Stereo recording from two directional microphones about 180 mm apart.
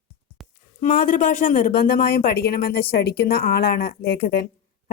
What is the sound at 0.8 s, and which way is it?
Speech, 50° left (ahead or behind).